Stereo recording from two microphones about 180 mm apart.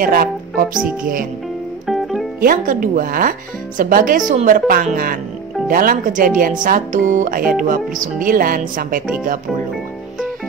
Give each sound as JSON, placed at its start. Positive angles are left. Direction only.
{"t": 0.0, "sound": "speech", "side_deg": -55}
{"t": 0.7, "sound": "a woman's voice", "side_deg": -5}
{"t": 1.9, "sound": "music", "side_deg": 0}
{"t": 2.4, "sound": "speech", "side_deg": -50}